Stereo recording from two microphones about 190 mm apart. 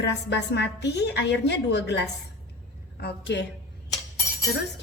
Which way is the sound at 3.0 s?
65° left (ahead or behind).